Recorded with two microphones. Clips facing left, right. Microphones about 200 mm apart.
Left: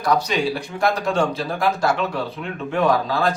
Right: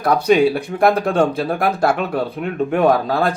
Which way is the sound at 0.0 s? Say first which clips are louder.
Right 7 dB; 55° right (ahead or behind).